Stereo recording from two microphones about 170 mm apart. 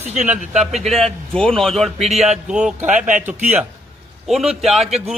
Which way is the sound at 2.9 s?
45° right (ahead or behind).